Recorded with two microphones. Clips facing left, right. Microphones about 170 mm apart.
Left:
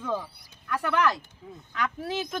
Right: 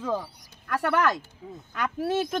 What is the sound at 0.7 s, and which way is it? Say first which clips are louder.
Speech: right 1 dB; 45° right (ahead or behind).